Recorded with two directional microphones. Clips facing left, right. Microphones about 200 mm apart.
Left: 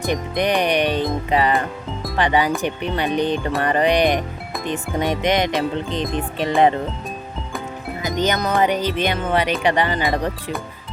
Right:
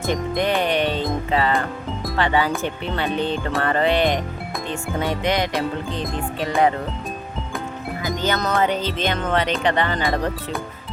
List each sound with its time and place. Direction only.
0.0 s music: 15° left (ahead or behind)
2.1 s speech: 15° left (ahead or behind)
4.9 s music: 20° left (ahead or behind)
8.0 s speech: 20° left (ahead or behind)